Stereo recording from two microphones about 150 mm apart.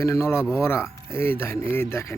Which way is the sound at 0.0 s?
20° left (ahead or behind).